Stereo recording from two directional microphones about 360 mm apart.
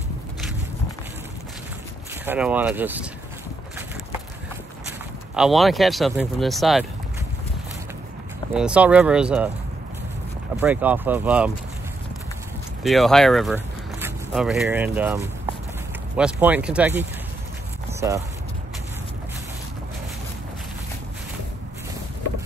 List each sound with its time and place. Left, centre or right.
2.2 s speech: centre
4.8 s speech: centre
8.5 s speech: centre
10.5 s speech: centre
12.8 s speech: centre